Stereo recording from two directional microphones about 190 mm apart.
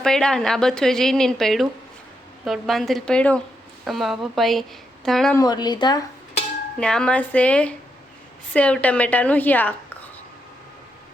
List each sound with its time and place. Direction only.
0.0 s speech: 5° left (ahead or behind)
5.4 s speech: 20° left (ahead or behind)
6.7 s a woman's voice: 5° left (ahead or behind)